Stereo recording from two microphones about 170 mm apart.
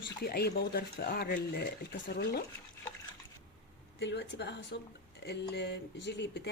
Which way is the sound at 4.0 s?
85° left.